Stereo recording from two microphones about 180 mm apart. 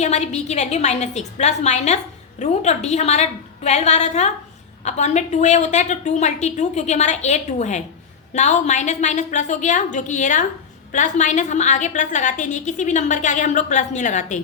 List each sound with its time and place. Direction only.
0.0 s a woman's voice: 40° left (ahead or behind)